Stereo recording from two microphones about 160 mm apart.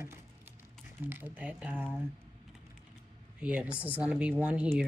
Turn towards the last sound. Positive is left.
turn(degrees=-10)  # may be behind; listen again after turning